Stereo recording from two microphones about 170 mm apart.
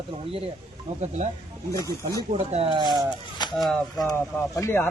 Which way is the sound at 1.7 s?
20° left (ahead or behind).